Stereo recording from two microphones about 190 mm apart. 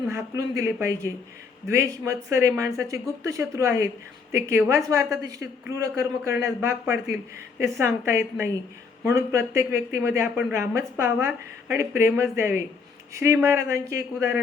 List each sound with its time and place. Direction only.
0.1 s speech: 15° right (ahead or behind)